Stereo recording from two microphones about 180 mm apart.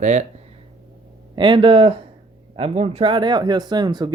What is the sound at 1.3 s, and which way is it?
Speech, 25° right (ahead or behind).